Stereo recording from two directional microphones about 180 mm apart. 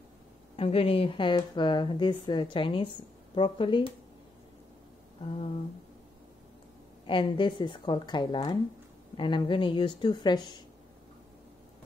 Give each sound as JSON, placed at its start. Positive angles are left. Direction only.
{"t": 0.6, "sound": "speech", "side_deg": 30}
{"t": 7.1, "sound": "speech", "side_deg": 30}